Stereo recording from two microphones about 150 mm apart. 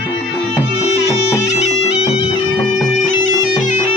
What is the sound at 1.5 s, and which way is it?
Bagpipes, 45° left (ahead or behind).